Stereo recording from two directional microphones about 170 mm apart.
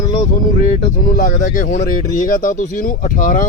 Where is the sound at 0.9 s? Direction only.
50° left (ahead or behind).